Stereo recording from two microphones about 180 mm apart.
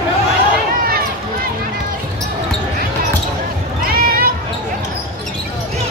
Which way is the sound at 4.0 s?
55° right (ahead or behind).